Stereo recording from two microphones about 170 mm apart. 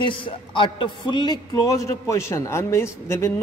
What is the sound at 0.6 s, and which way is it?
A man's voice, 30° left (ahead or behind).